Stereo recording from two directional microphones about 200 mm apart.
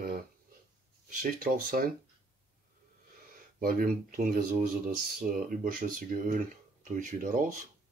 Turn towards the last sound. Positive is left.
turn(degrees=-40)  # may be behind; listen again after turning